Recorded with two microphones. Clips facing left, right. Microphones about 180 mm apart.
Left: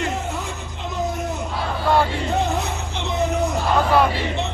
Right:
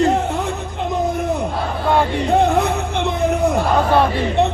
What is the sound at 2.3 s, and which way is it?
Music, 55° right (ahead or behind).